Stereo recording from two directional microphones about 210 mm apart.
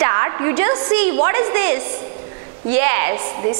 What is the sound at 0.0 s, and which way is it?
A woman's voice, 20° right (ahead or behind).